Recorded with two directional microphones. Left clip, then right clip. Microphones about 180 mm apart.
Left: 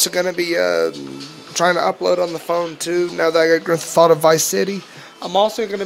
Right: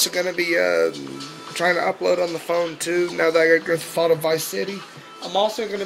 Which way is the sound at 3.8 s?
40° left (ahead or behind).